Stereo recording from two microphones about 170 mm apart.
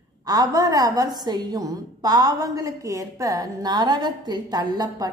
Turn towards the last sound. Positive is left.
turn(degrees=-25)  # may be behind; listen again after turning